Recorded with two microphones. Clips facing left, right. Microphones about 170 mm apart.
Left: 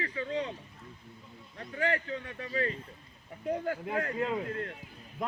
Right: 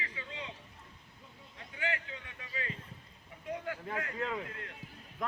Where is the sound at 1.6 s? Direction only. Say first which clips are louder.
Left 7 dB; 45° left (ahead or behind).